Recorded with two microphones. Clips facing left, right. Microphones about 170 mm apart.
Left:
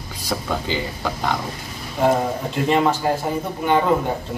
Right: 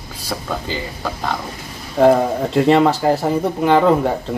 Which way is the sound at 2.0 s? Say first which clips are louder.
Right 6 dB; 70° right (ahead or behind).